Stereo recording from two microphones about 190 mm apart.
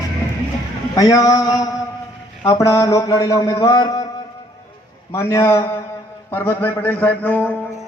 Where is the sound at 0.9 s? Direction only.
20° left (ahead or behind).